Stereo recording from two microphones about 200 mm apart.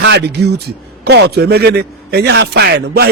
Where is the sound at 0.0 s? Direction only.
55° right (ahead or behind).